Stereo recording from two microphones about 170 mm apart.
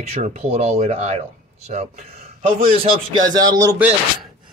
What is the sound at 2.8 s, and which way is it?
Speech, 25° right (ahead or behind).